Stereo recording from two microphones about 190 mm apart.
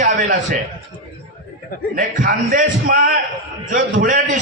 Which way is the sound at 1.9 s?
45° right (ahead or behind).